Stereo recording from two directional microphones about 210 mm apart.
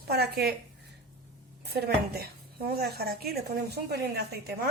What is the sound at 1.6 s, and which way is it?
A woman's voice, 50° right (ahead or behind).